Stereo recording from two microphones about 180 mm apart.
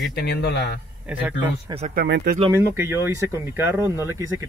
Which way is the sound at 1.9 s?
70° right (ahead or behind).